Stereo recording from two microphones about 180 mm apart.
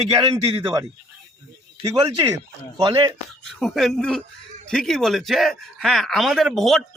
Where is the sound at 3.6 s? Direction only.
Centre (ahead or behind).